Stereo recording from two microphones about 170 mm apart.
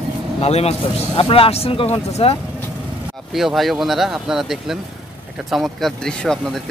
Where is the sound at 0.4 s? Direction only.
40° left (ahead or behind).